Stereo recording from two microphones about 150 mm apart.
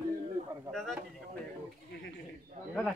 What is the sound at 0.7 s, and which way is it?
Speech, centre (ahead or behind).